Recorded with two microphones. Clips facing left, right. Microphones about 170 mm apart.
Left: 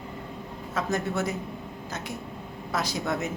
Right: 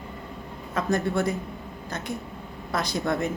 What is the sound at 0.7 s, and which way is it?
Speech, 5° left (ahead or behind).